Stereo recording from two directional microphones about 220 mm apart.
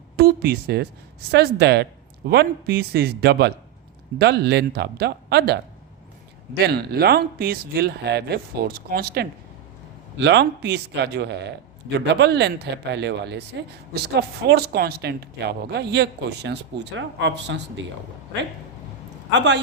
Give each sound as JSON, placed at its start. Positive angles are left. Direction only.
{"t": 0.2, "sound": "speech", "side_deg": -45}
{"t": 6.7, "sound": "speech", "side_deg": -45}
{"t": 19.3, "sound": "speech", "side_deg": -50}